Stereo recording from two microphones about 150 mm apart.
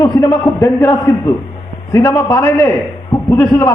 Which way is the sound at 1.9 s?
20° left (ahead or behind).